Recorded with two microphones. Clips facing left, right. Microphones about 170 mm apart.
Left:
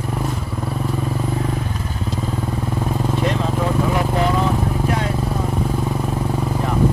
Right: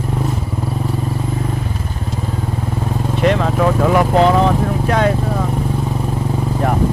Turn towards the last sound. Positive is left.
turn(degrees=-75)  # may be behind; listen again after turning